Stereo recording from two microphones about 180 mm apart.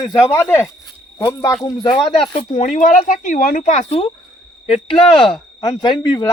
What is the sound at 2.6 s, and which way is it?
Speech, 45° left (ahead or behind).